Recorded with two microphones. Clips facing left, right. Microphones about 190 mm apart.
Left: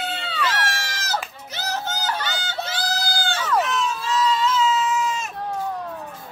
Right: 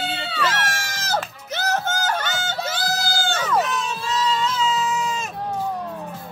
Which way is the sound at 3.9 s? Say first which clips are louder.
Left 1 dB; 35° right (ahead or behind).